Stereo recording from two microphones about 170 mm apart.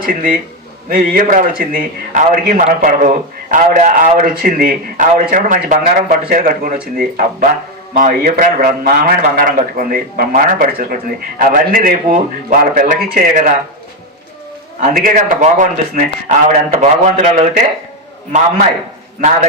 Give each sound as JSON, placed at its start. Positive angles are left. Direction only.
{"t": 0.0, "sound": "a man's voice", "side_deg": -55}
{"t": 14.8, "sound": "a man's voice", "side_deg": -50}